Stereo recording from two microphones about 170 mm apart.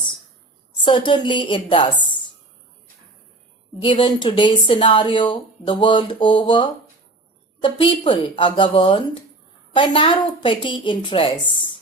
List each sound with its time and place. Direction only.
0.8 s speech: 30° left (ahead or behind)
3.8 s speech: 30° left (ahead or behind)